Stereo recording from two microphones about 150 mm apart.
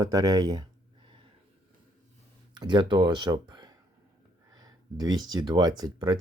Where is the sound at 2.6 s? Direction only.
30° right (ahead or behind).